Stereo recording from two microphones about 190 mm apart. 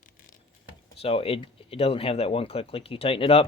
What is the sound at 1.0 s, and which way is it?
Speech, 30° left (ahead or behind).